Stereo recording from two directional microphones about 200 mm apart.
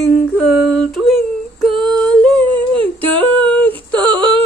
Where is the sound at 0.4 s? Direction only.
5° left (ahead or behind).